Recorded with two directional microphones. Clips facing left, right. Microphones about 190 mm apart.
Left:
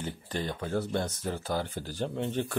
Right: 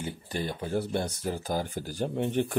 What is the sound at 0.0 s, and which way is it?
Speech, 10° right (ahead or behind).